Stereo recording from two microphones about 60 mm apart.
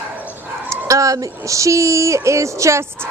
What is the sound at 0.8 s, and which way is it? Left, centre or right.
Speech, right.